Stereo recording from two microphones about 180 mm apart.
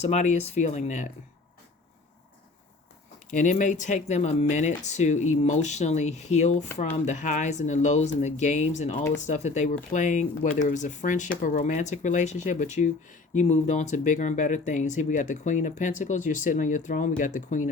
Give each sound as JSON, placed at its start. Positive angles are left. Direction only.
{"t": 0.0, "sound": "speech", "side_deg": 40}
{"t": 3.2, "sound": "speech", "side_deg": 45}